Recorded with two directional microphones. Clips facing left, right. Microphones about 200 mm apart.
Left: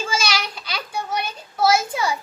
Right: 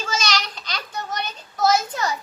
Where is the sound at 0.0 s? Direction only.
10° left (ahead or behind).